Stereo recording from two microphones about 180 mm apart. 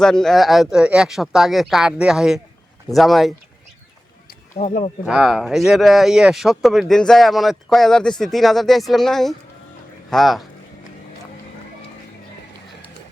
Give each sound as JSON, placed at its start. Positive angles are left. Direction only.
{"t": 0.0, "sound": "speech", "side_deg": 5}
{"t": 4.5, "sound": "speech", "side_deg": 40}
{"t": 5.0, "sound": "speech", "side_deg": -5}